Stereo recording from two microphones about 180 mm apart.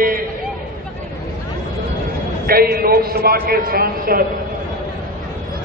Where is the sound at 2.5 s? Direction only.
55° right (ahead or behind).